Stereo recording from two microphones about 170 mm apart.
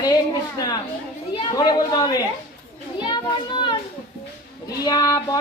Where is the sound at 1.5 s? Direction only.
25° left (ahead or behind).